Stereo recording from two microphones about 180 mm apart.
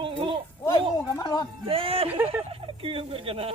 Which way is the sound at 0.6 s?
20° left (ahead or behind).